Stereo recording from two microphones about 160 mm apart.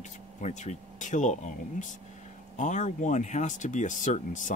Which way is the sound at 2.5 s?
50° left (ahead or behind).